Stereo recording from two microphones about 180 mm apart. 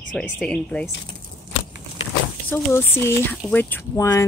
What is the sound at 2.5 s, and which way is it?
Speech, 15° left (ahead or behind).